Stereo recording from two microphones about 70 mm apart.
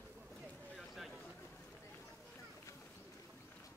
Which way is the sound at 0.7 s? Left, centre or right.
Centre.